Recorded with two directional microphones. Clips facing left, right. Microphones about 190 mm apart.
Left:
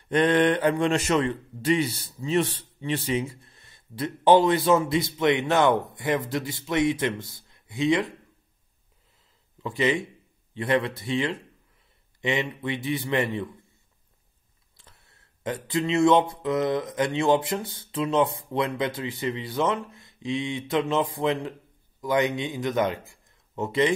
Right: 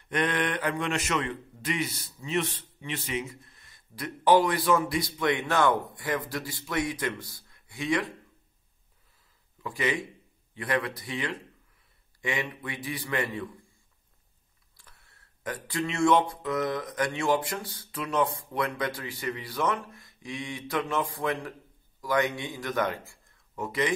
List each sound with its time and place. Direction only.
0.1 s speech: 30° left (ahead or behind)
9.6 s speech: 25° left (ahead or behind)
14.8 s speech: 25° left (ahead or behind)